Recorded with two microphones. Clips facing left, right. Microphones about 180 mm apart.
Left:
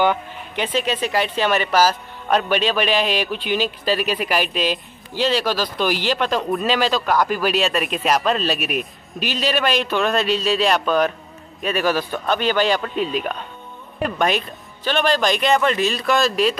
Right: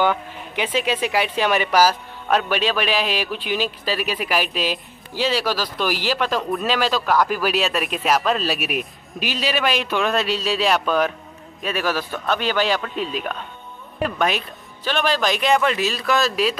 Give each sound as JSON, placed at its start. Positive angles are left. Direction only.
{"t": 0.6, "sound": "a man's voice", "side_deg": -10}